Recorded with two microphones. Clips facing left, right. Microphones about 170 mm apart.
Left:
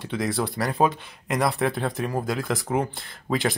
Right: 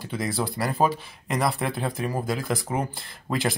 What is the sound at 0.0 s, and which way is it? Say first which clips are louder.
Speech: left 2 dB; centre (ahead or behind).